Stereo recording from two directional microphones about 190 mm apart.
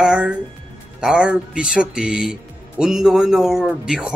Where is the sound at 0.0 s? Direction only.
Centre (ahead or behind).